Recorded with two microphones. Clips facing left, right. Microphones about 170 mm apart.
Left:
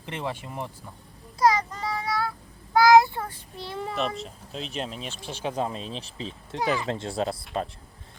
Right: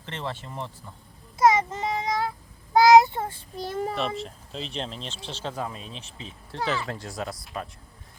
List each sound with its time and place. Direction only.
0.0 s speech: 15° left (ahead or behind)
1.4 s child singing: 20° right (ahead or behind)
3.6 s a child's voice: 45° right (ahead or behind)
3.9 s speech: centre (ahead or behind)
5.6 s speech: 30° left (ahead or behind)
6.5 s speech: 15° left (ahead or behind)